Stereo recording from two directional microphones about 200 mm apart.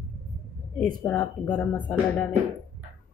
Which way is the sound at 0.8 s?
10° left (ahead or behind).